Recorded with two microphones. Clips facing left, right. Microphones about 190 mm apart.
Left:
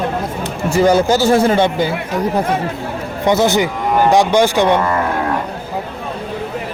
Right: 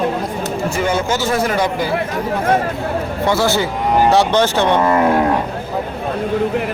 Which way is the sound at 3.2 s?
20° left (ahead or behind).